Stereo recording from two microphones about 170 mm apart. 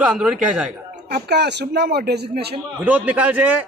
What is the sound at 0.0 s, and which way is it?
Speech, 5° right (ahead or behind).